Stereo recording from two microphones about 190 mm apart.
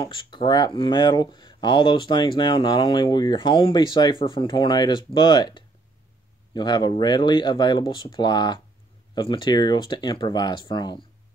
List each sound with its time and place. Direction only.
0.0 s speech: 25° left (ahead or behind)